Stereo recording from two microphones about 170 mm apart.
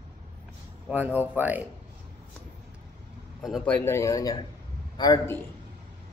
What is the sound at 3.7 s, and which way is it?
A man's voice, 15° left (ahead or behind).